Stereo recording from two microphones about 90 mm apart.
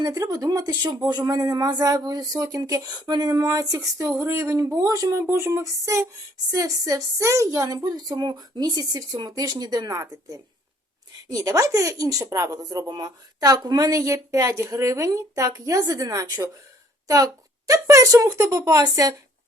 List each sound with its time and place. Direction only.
0.0 s a woman's voice: 40° right (ahead or behind)
5.3 s a woman's voice: 30° right (ahead or behind)